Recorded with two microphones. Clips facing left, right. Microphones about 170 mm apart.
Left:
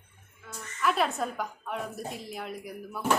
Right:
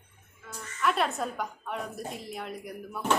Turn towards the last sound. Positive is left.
turn(degrees=5)  # may be behind; listen again after turning